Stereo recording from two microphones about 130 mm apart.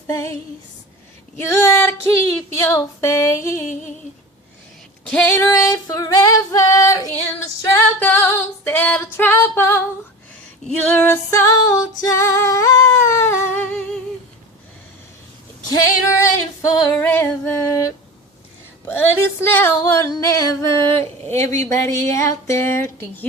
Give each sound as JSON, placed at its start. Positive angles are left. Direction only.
{"t": 0.1, "sound": "female singing", "side_deg": 20}
{"t": 1.4, "sound": "female singing", "side_deg": 20}
{"t": 5.0, "sound": "female singing", "side_deg": 10}
{"t": 5.5, "sound": "female singing", "side_deg": 25}
{"t": 10.9, "sound": "female singing", "side_deg": 15}
{"t": 15.7, "sound": "female singing", "side_deg": 25}
{"t": 18.9, "sound": "female singing", "side_deg": 15}